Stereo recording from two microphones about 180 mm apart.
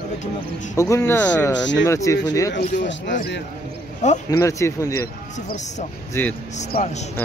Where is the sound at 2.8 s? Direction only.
80° left.